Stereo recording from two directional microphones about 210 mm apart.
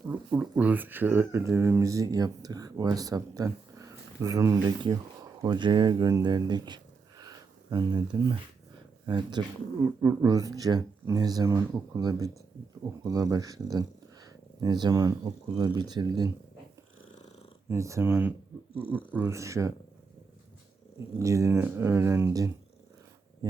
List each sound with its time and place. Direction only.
0.1 s speech: 10° right (ahead or behind)
17.7 s speech: 15° right (ahead or behind)
21.2 s speech: 15° right (ahead or behind)